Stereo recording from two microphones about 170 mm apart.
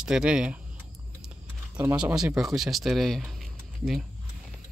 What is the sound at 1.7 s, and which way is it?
Speech, 10° right (ahead or behind).